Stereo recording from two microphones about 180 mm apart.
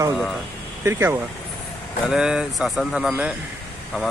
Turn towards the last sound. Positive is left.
turn(degrees=-5)  # may be behind; listen again after turning